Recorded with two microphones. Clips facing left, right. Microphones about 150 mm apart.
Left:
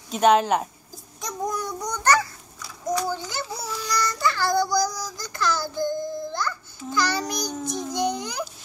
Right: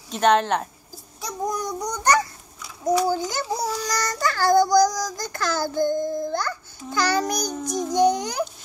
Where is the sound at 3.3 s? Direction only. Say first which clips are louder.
Right 6 dB; 40° right (ahead or behind).